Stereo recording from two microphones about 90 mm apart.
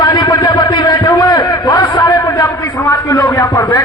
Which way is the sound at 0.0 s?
50° left (ahead or behind).